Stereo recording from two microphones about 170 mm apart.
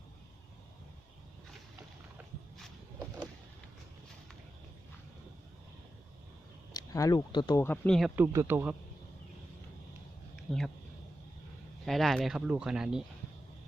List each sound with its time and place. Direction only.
6.7 s speech: 20° left (ahead or behind)
7.9 s speech: centre (ahead or behind)
8.1 s speech: 15° right (ahead or behind)
10.3 s a sound: centre (ahead or behind)
11.9 s speech: centre (ahead or behind)